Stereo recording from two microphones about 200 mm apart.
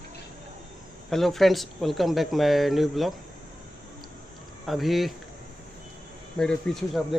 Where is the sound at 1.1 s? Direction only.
Centre (ahead or behind).